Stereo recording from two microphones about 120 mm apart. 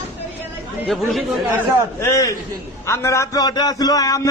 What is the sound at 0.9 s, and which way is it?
Speech, centre (ahead or behind).